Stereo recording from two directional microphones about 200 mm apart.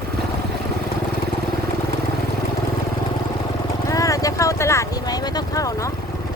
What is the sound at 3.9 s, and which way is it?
Vehicle, 15° left (ahead or behind).